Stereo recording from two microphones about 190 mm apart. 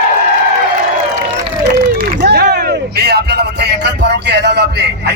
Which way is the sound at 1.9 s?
60° right (ahead or behind).